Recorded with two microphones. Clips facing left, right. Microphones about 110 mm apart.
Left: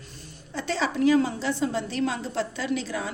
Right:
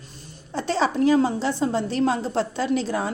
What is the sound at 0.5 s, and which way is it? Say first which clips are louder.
A woman's voice: right 5 dB; 35° right (ahead or behind).